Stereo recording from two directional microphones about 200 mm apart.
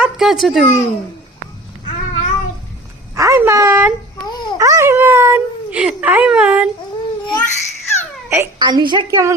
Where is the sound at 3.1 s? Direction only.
15° right (ahead or behind).